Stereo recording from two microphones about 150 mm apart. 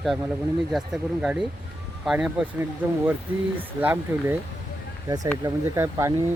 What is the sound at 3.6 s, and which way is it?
Speech, 10° right (ahead or behind).